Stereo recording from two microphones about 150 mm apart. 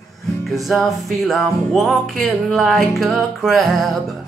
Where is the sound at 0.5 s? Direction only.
Centre (ahead or behind).